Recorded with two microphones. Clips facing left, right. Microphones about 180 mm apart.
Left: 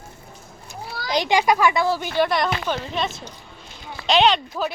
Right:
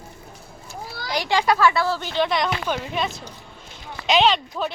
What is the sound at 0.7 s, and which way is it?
Speech, 20° left (ahead or behind).